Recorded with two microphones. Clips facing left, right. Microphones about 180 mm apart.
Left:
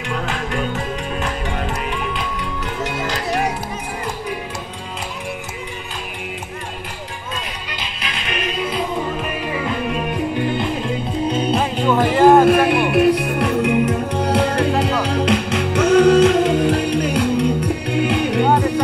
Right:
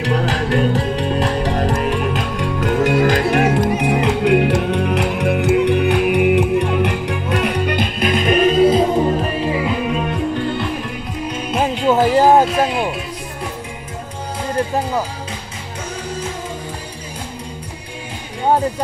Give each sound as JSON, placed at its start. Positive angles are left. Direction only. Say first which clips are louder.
{"t": 2.8, "sound": "music", "louder": "right 9 dB", "side_deg": -50}
{"t": 6.1, "sound": "music", "louder": "right 18 dB", "side_deg": -65}
{"t": 8.0, "sound": "music", "louder": "right 12 dB", "side_deg": -40}
{"t": 11.9, "sound": "music", "louder": "right 1 dB", "side_deg": -40}
{"t": 12.4, "sound": "music", "louder": "left 4 dB", "side_deg": 60}
{"t": 15.8, "sound": "music", "louder": "left 16 dB", "side_deg": 75}